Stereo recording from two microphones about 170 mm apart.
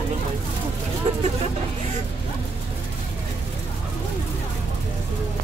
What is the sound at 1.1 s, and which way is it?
Vehicle, 40° right (ahead or behind).